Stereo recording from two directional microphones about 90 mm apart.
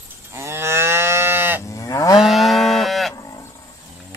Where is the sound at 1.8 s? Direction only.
40° left (ahead or behind).